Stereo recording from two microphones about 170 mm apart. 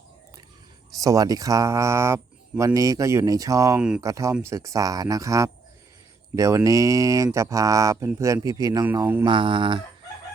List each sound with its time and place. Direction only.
1.0 s speech: 20° right (ahead or behind)
3.8 s speech: 5° right (ahead or behind)
4.0 s speech: 20° right (ahead or behind)
9.2 s speech: 30° right (ahead or behind)